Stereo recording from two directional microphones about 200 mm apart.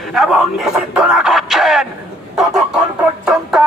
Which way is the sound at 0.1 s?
Centre (ahead or behind).